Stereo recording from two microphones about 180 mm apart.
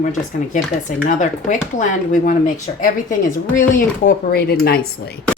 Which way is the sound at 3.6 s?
45° left (ahead or behind).